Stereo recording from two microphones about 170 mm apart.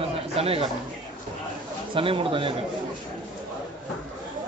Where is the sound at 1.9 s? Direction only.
30° right (ahead or behind).